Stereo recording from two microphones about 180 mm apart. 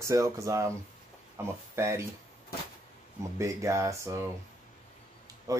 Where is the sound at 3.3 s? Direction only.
15° right (ahead or behind).